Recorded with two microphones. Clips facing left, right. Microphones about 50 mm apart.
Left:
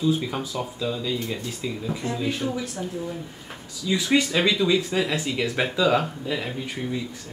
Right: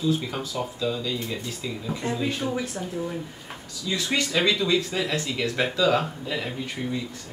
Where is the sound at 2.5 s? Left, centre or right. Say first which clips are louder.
Right 1 dB; right.